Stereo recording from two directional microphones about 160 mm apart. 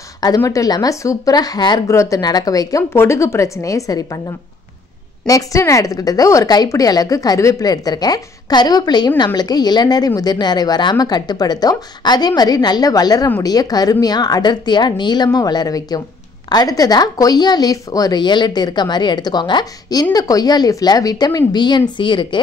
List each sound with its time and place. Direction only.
0.2 s speech: 20° left (ahead or behind)
5.2 s speech: 20° left (ahead or behind)